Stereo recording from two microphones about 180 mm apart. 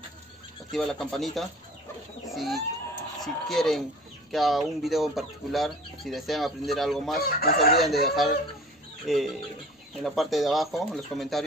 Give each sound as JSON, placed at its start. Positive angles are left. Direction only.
{"t": 0.7, "sound": "speech", "side_deg": 0}
{"t": 2.2, "sound": "bird", "side_deg": 0}
{"t": 3.2, "sound": "speech", "side_deg": 0}
{"t": 7.2, "sound": "chicken", "side_deg": 55}
{"t": 7.8, "sound": "speech", "side_deg": 0}